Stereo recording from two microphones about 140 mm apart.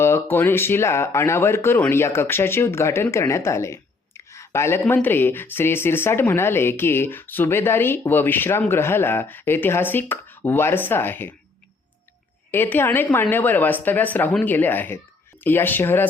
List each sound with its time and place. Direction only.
0.0 s a woman's voice: 15° left (ahead or behind)
4.3 s a sound: 20° left (ahead or behind)
5.0 s a woman's voice: 15° left (ahead or behind)
12.5 s a woman's voice: 15° left (ahead or behind)